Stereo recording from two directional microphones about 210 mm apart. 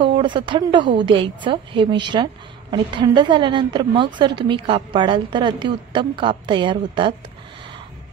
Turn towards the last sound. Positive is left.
turn(degrees=-25)  # may be behind; listen again after turning